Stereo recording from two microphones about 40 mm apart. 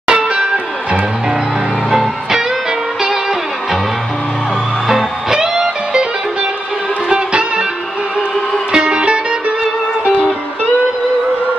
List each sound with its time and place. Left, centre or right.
0.0 s music: right
1.9 s music: centre
4.8 s music: centre
7.1 s music: right
8.7 s music: right